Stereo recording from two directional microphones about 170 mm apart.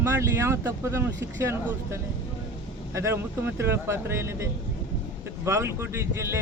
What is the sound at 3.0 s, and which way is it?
Speech, 15° right (ahead or behind).